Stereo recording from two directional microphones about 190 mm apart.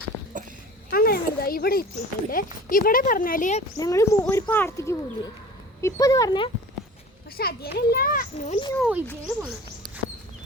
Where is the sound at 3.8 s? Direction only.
15° left (ahead or behind).